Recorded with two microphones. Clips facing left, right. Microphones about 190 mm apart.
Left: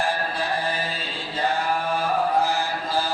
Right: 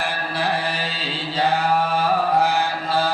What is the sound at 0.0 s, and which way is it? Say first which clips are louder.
Music: right 1 dB; 70° right (ahead or behind).